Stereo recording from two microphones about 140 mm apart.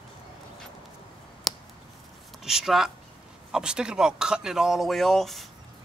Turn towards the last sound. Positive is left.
turn(degrees=0)  # may be behind; listen again after turning